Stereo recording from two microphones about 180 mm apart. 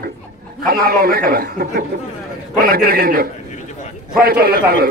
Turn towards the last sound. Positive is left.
turn(degrees=-55)  # may be behind; listen again after turning